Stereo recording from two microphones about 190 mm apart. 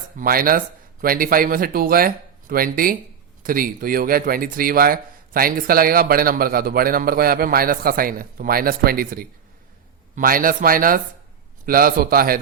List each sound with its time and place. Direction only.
0.2 s speech: 50° right (ahead or behind)